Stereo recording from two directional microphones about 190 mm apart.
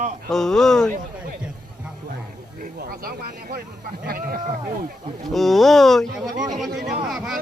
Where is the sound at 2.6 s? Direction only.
50° right (ahead or behind).